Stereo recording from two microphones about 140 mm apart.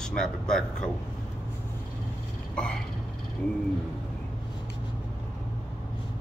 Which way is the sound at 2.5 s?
5° left (ahead or behind).